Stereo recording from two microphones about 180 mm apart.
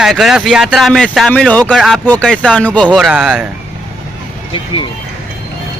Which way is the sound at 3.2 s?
5° right (ahead or behind).